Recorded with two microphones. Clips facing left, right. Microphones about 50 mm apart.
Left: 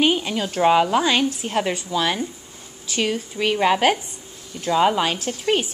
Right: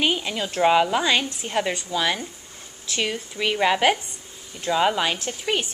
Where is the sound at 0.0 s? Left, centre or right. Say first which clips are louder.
Left 4 dB; centre.